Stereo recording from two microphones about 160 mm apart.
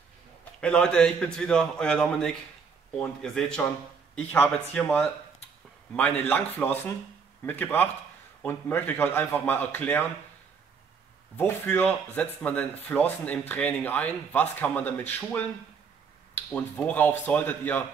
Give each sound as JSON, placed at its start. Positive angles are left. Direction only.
{"t": 0.6, "sound": "a man's voice", "side_deg": 5}
{"t": 11.3, "sound": "speech", "side_deg": 10}